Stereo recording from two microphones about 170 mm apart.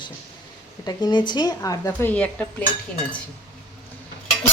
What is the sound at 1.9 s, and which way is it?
Speech, 10° left (ahead or behind).